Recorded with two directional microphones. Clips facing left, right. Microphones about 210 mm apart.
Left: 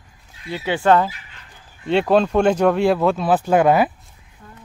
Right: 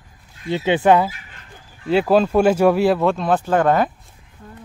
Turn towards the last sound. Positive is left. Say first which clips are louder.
# left 2 dB
turn(degrees=10)  # may be behind; listen again after turning